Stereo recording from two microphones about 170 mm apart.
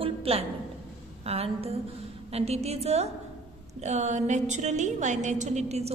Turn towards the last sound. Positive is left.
turn(degrees=-40)  # may be behind; listen again after turning